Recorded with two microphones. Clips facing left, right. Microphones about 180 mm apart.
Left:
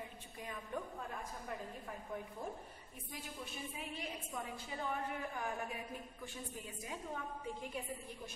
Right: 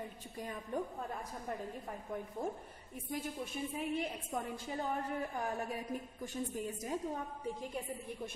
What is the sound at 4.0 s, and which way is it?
A woman's voice, 40° right (ahead or behind).